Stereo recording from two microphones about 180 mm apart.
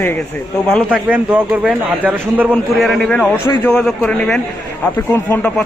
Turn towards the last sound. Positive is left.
turn(degrees=10)  # may be behind; listen again after turning